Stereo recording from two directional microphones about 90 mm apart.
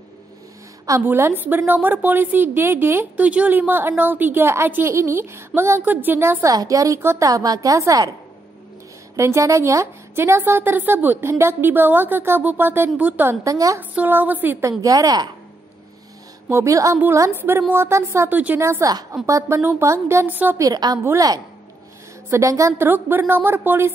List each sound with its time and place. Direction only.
1.0 s a woman's voice: 25° right (ahead or behind)
6.5 s a woman's voice: 45° right (ahead or behind)
7.2 s a woman's voice: 40° right (ahead or behind)
9.1 s a woman's voice: 30° right (ahead or behind)
13.4 s a woman's voice: 40° right (ahead or behind)
13.7 s a woman's voice: 20° right (ahead or behind)
14.6 s a woman's voice: 40° right (ahead or behind)
16.4 s a woman's voice: 35° right (ahead or behind)
18.3 s a woman's voice: 20° right (ahead or behind)
18.6 s a woman's voice: 30° right (ahead or behind)
20.2 s a woman's voice: 20° right (ahead or behind)
20.5 s a woman's voice: 45° right (ahead or behind)
22.3 s a woman's voice: 35° right (ahead or behind)
22.8 s a woman's voice: 20° right (ahead or behind)